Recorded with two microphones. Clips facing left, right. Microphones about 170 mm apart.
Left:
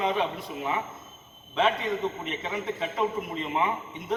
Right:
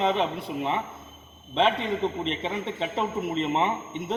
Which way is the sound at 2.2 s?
30° right (ahead or behind).